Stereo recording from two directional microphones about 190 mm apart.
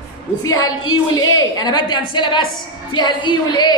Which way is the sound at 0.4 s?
20° left (ahead or behind).